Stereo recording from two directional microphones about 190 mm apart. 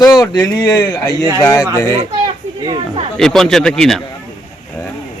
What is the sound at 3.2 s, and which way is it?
Speech, centre (ahead or behind).